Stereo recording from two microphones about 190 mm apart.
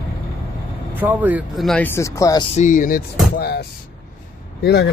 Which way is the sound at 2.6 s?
45° left (ahead or behind).